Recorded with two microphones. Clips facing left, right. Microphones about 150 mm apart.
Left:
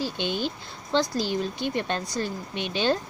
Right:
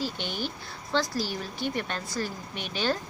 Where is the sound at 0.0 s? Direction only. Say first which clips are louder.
Left 4 dB; 20° left (ahead or behind).